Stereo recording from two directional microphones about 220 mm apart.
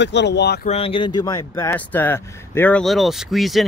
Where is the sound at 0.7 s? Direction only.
25° left (ahead or behind).